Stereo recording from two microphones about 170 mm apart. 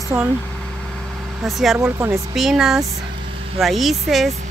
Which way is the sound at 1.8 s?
15° right (ahead or behind).